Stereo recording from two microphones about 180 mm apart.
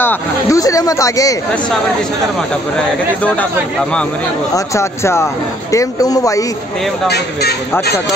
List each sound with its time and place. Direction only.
0.0 s speech: 15° left (ahead or behind)
4.6 s speech: 15° left (ahead or behind)